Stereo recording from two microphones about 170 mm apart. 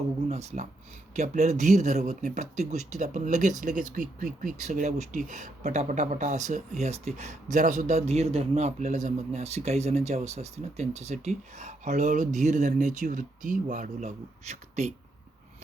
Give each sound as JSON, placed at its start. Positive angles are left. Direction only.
{"t": 0.3, "sound": "speech", "side_deg": -40}